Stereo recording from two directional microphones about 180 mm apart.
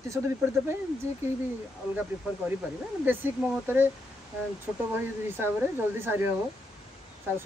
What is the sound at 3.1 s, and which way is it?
Speech, 10° right (ahead or behind).